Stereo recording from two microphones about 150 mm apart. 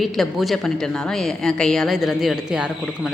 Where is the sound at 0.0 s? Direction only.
Centre (ahead or behind).